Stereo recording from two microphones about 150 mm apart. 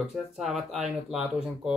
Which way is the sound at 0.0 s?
Centre (ahead or behind).